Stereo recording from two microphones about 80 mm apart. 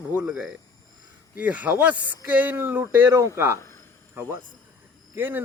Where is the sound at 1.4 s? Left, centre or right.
Centre.